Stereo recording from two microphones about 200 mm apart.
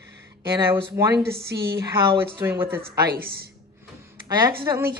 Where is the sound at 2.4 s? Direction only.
10° right (ahead or behind).